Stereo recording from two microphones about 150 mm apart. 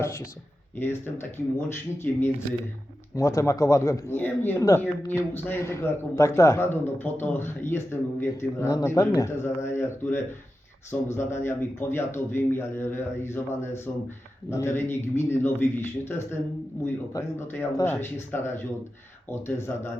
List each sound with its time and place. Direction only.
0.8 s speech: 15° left (ahead or behind)